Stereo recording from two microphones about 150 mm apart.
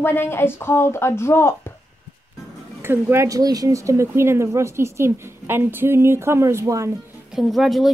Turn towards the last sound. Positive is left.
turn(degrees=0)  # may be behind; listen again after turning